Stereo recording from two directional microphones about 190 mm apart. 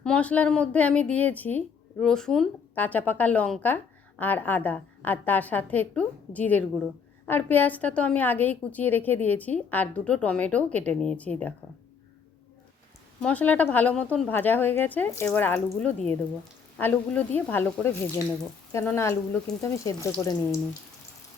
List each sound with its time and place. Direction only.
0.0 s a woman's voice: 5° left (ahead or behind)
13.2 s a woman's voice: 10° left (ahead or behind)